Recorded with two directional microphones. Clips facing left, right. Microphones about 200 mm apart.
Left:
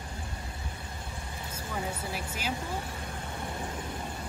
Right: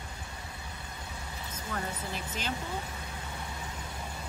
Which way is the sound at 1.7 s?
10° left (ahead or behind).